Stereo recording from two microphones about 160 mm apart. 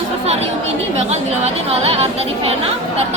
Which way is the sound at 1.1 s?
40° right (ahead or behind).